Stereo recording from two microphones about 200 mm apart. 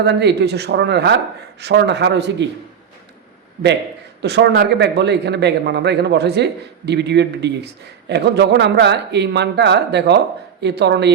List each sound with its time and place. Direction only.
0.0 s a man's voice: 60° right (ahead or behind)
4.2 s a man's voice: 55° right (ahead or behind)